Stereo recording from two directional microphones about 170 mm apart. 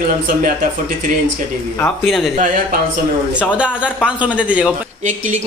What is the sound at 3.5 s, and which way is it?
A man's voice, 5° right (ahead or behind).